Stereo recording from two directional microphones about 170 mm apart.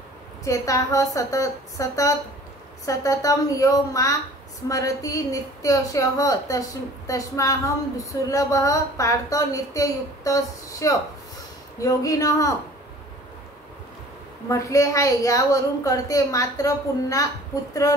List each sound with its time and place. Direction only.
0.5 s a woman's voice: 20° left (ahead or behind)
14.5 s a woman's voice: 20° left (ahead or behind)